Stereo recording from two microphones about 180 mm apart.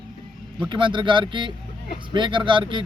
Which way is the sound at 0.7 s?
25° right (ahead or behind).